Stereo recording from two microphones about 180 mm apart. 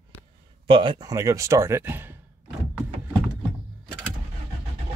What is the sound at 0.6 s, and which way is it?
Speech, 30° right (ahead or behind).